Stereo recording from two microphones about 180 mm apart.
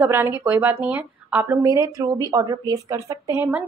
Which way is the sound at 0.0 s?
10° right (ahead or behind).